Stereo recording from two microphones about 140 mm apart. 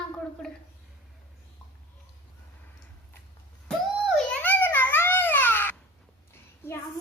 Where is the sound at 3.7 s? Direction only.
10° left (ahead or behind).